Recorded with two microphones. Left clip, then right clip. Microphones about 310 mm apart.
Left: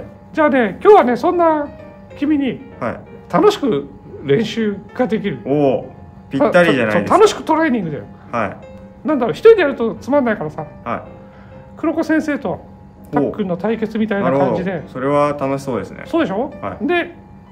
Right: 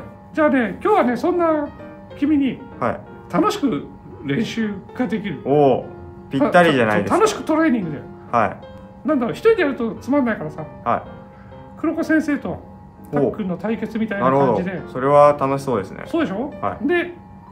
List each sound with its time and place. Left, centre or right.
0.3 s speech: left
2.8 s speech: centre
3.3 s speech: left
5.4 s speech: centre
7.1 s speech: left
8.3 s speech: centre
9.0 s speech: left
10.9 s speech: centre
11.8 s speech: left
14.2 s speech: centre
16.1 s speech: left